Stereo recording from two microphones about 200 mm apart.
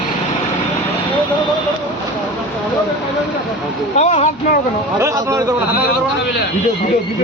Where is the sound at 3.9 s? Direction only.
35° left (ahead or behind).